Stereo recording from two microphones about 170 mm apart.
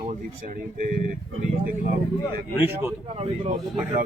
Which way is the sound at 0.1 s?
50° right (ahead or behind).